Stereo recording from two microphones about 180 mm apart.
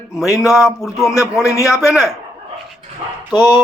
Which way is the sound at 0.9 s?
20° left (ahead or behind).